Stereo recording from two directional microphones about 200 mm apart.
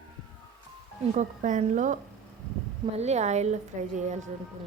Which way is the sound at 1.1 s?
40° right (ahead or behind).